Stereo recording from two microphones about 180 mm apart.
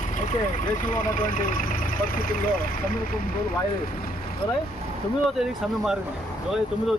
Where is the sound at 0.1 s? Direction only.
45° left (ahead or behind).